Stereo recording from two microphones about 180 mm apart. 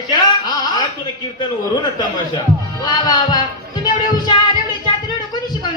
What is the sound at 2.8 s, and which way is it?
Speech, 25° left (ahead or behind).